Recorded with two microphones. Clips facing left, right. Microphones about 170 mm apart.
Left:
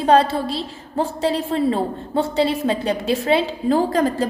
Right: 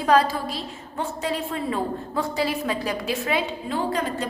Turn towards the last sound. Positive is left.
turn(degrees=40)  # may be behind; listen again after turning